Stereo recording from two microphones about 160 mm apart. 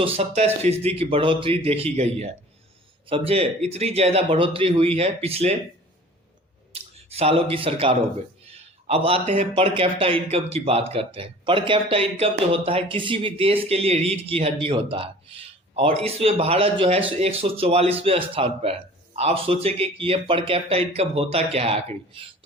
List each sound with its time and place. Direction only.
0.0 s speech: 35° right (ahead or behind)
7.1 s speech: 40° right (ahead or behind)